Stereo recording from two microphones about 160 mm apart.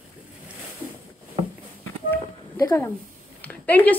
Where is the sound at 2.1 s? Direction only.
15° left (ahead or behind).